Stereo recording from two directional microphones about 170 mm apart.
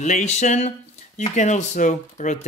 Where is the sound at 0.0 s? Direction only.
45° left (ahead or behind).